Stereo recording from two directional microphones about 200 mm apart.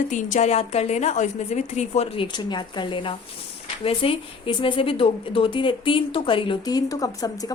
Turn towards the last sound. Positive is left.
turn(degrees=20)  # may be behind; listen again after turning